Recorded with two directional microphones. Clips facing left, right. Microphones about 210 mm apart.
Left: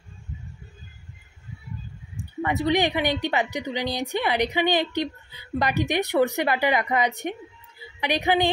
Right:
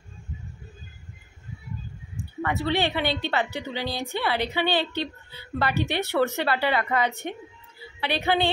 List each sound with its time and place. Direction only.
2.4 s a woman's voice: 15° left (ahead or behind)